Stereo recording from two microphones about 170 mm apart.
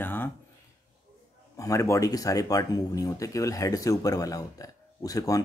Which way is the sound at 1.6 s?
15° left (ahead or behind).